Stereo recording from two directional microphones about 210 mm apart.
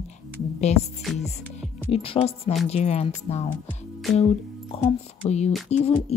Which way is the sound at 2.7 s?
30° left (ahead or behind).